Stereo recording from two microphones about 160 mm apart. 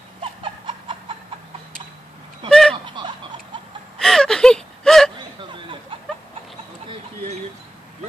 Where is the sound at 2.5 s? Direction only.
5° left (ahead or behind).